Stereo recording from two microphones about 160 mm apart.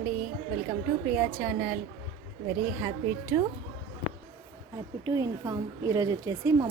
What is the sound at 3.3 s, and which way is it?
Speech, 15° right (ahead or behind).